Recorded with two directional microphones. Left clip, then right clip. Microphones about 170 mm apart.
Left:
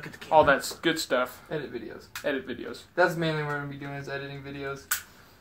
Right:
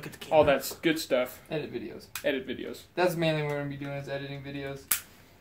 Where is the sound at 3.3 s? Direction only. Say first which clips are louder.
Even; 40° right (ahead or behind).